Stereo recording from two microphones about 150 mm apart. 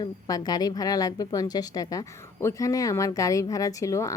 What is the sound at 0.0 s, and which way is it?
A woman's voice, 25° left (ahead or behind).